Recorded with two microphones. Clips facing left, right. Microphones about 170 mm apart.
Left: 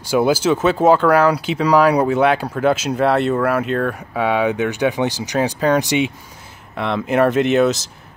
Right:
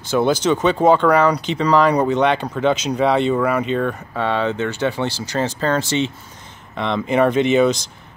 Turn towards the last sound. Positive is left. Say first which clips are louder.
# even
turn(degrees=0)  # may be behind; listen again after turning